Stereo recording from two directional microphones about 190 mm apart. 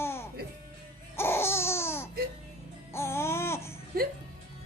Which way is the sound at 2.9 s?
15° left (ahead or behind).